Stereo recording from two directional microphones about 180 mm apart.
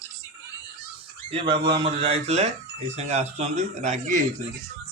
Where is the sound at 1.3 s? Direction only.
30° right (ahead or behind).